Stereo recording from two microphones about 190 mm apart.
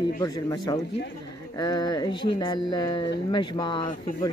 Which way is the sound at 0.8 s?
65° left (ahead or behind).